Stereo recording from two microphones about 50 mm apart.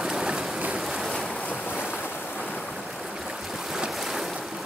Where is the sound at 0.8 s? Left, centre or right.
Centre.